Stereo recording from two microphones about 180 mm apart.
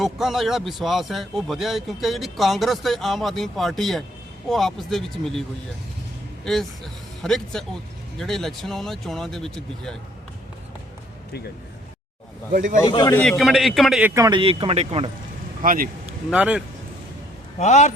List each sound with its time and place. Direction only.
0.0 s speech: centre (ahead or behind)
6.4 s speech: centre (ahead or behind)
12.5 s speech: 50° right (ahead or behind)
12.8 s a man's voice: 25° left (ahead or behind)
13.1 s speech: centre (ahead or behind)
14.1 s speech: 20° right (ahead or behind)
15.6 s speech: 50° right (ahead or behind)
16.3 s speech: 5° right (ahead or behind)
17.6 s a man's voice: 40° left (ahead or behind)